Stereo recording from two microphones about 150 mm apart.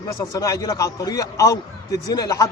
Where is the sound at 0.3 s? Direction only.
20° left (ahead or behind).